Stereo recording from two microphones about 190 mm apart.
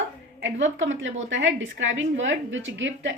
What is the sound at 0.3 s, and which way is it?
A woman's voice, 75° right (ahead or behind).